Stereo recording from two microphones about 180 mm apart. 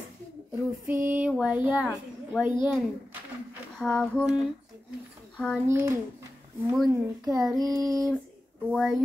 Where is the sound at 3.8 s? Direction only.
5° left (ahead or behind).